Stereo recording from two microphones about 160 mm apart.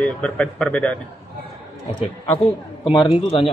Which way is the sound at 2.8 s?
35° left (ahead or behind).